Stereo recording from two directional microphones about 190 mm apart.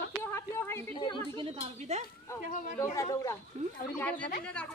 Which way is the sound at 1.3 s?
30° right (ahead or behind).